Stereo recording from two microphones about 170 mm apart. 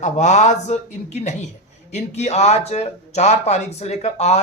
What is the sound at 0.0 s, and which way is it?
Speech, 45° left (ahead or behind).